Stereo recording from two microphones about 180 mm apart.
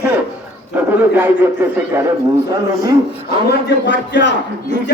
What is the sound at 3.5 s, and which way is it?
A man's voice, 75° left (ahead or behind).